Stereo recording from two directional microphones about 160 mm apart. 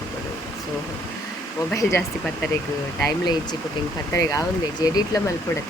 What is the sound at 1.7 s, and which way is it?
Speech, 15° left (ahead or behind).